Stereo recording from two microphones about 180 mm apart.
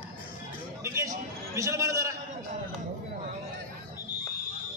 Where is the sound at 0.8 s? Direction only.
15° right (ahead or behind).